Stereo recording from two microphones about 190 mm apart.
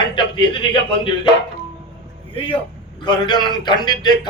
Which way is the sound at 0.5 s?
25° left (ahead or behind).